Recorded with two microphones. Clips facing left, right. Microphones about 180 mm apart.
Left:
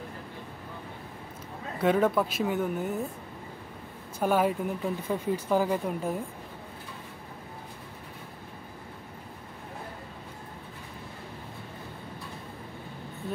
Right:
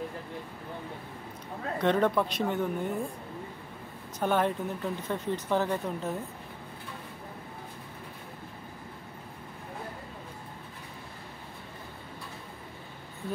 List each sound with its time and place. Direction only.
1.8 s speech: 5° left (ahead or behind)
4.2 s speech: 10° left (ahead or behind)